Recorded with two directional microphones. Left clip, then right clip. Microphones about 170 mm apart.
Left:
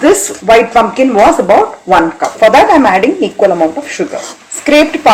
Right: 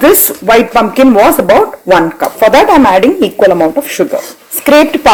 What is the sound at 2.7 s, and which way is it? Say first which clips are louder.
Speech: right 2 dB; 60° right (ahead or behind).